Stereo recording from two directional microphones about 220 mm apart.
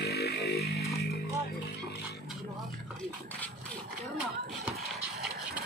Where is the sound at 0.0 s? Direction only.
45° left (ahead or behind).